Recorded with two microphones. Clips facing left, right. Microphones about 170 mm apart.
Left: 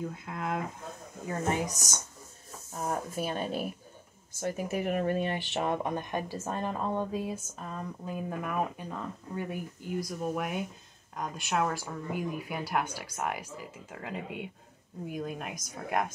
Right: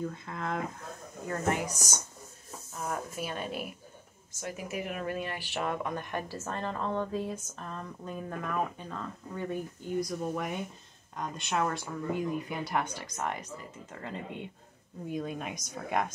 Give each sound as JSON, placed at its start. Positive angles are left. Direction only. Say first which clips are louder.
{"t": 0.0, "sound": "speech", "louder": "even", "side_deg": 5}
{"t": 1.2, "sound": "speech", "louder": "even", "side_deg": 20}
{"t": 2.7, "sound": "speech", "louder": "left 3 dB", "side_deg": 35}
{"t": 5.0, "sound": "speech", "louder": "left 5 dB", "side_deg": 30}